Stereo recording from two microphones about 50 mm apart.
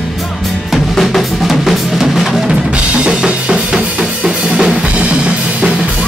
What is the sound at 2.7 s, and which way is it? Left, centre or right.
Drum kit, right.